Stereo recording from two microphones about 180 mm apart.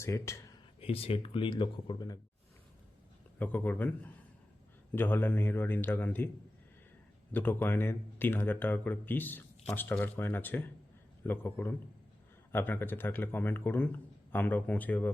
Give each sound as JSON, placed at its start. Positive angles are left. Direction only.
{"t": 0.0, "sound": "speech", "side_deg": 15}
{"t": 0.8, "sound": "speech", "side_deg": 35}
{"t": 3.3, "sound": "speech", "side_deg": 10}
{"t": 7.3, "sound": "speech", "side_deg": 10}